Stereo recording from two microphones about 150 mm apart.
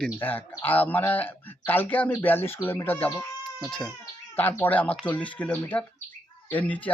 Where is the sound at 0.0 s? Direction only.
10° left (ahead or behind).